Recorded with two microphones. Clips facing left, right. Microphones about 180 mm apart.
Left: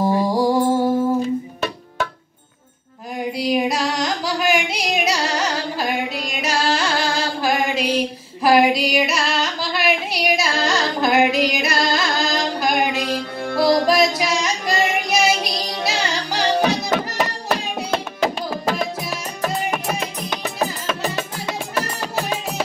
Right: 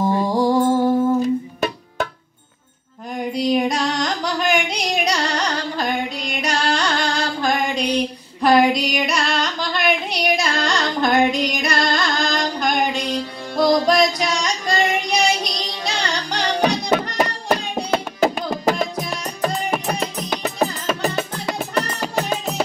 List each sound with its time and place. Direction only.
0.0 s music: 10° left (ahead or behind)
3.3 s a sound: 5° left (ahead or behind)
7.3 s female singing: 5° left (ahead or behind)